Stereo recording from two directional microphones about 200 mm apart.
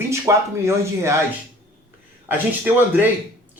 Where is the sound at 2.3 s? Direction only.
10° right (ahead or behind).